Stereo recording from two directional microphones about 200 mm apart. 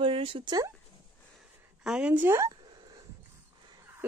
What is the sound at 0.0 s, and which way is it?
Speech, 25° right (ahead or behind).